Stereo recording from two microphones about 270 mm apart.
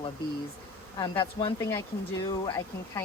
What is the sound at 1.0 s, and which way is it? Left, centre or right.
Speech, centre.